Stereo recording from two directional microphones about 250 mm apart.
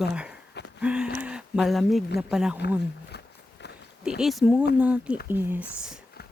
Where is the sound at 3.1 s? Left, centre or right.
Left.